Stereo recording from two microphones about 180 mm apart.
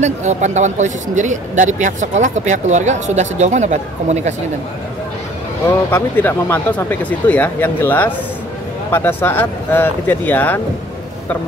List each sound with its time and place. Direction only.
0.0 s speech: 40° right (ahead or behind)
5.7 s speech: 15° left (ahead or behind)